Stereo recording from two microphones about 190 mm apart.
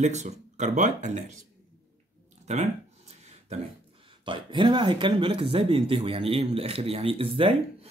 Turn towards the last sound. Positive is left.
turn(degrees=-30)  # may be behind; listen again after turning